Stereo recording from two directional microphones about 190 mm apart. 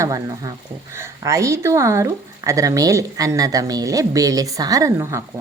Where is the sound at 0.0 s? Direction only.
15° right (ahead or behind).